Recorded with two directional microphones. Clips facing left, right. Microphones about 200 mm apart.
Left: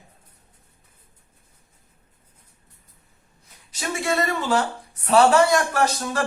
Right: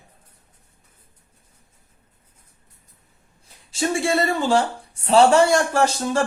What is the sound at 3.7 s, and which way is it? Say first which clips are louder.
A woman's voice: right 4 dB; 30° right (ahead or behind).